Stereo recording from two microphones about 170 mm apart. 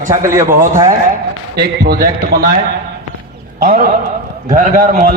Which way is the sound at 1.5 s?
70° right (ahead or behind).